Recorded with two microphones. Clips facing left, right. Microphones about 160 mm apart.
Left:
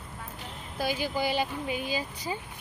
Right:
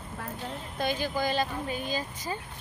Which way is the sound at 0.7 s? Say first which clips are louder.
Even; 10° left (ahead or behind).